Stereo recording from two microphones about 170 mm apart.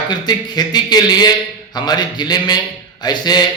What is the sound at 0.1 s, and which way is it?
Speech, 25° left (ahead or behind).